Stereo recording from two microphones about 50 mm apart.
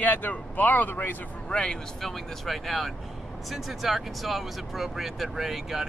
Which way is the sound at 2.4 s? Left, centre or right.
Centre.